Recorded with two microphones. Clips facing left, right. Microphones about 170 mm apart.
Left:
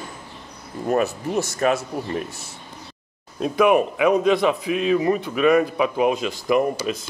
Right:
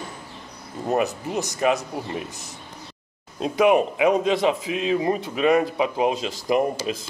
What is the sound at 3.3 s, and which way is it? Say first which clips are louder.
A man's voice: left 1 dB; 25° right (ahead or behind).